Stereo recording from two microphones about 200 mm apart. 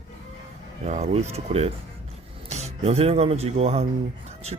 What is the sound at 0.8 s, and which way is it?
Speech, 35° right (ahead or behind).